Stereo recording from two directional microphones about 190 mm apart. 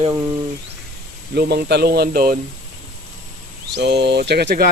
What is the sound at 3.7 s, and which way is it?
Speech, 65° right (ahead or behind).